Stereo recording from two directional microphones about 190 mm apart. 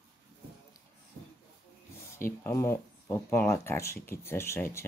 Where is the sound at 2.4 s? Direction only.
15° left (ahead or behind).